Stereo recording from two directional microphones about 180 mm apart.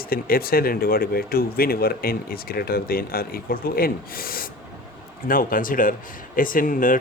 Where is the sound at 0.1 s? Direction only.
55° left (ahead or behind).